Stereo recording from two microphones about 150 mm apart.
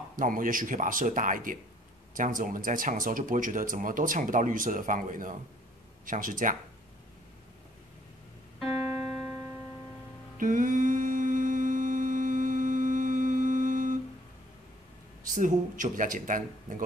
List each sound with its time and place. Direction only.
0.1 s speech: 65° right (ahead or behind)
8.5 s music: 5° right (ahead or behind)
10.3 s humming: 65° right (ahead or behind)
15.2 s speech: 60° right (ahead or behind)